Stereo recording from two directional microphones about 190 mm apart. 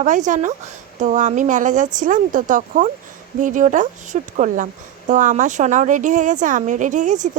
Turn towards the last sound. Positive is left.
turn(degrees=-40)  # may be behind; listen again after turning